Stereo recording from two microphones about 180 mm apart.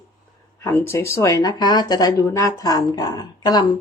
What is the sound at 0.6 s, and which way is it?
Speech, 15° left (ahead or behind).